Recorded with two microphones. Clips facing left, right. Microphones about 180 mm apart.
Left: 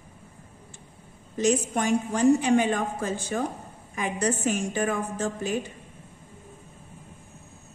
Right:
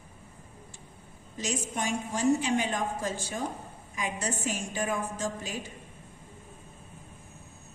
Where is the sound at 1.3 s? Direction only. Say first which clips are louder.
Left 9 dB; 55° left (ahead or behind).